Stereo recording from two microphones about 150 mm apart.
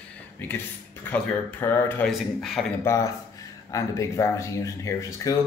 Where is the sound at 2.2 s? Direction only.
Centre (ahead or behind).